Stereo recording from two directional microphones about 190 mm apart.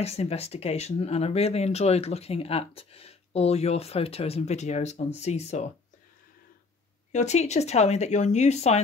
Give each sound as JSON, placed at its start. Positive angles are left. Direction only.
{"t": 0.0, "sound": "speech", "side_deg": 35}
{"t": 7.1, "sound": "speech", "side_deg": 35}